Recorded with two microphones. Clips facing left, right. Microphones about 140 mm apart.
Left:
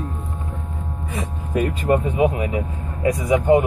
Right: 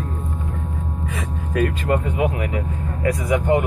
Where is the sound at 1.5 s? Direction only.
20° left (ahead or behind).